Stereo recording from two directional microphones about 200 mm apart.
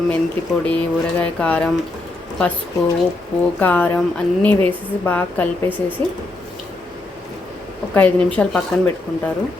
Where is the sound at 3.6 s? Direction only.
10° left (ahead or behind).